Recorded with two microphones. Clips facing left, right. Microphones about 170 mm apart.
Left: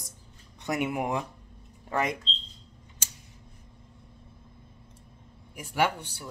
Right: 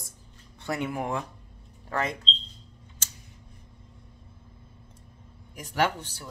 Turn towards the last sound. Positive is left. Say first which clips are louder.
# even
turn(degrees=10)  # may be behind; listen again after turning